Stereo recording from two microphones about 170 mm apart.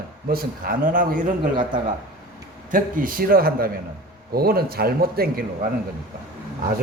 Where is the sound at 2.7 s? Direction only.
55° right (ahead or behind).